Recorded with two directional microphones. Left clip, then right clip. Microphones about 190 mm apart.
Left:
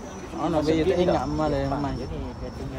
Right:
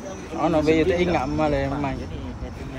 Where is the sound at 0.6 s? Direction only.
50° left (ahead or behind).